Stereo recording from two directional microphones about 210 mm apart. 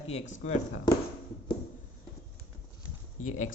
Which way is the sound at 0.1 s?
35° left (ahead or behind).